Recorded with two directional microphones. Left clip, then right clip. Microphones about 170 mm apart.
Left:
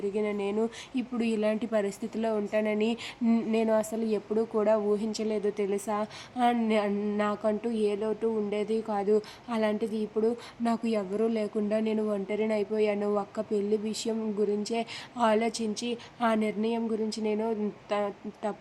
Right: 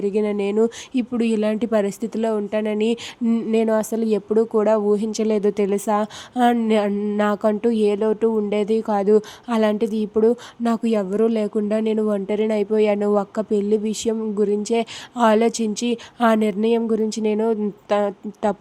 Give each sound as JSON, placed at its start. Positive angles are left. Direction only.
{"t": 0.0, "sound": "speech", "side_deg": -40}